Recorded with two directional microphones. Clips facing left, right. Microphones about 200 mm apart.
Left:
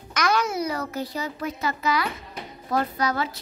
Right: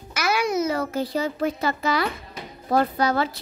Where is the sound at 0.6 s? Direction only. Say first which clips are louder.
Right 4 dB; 25° right (ahead or behind).